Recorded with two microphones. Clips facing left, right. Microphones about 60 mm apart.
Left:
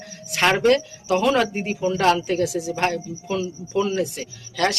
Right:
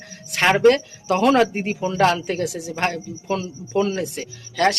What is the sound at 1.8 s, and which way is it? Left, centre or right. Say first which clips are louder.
Speech: even; right.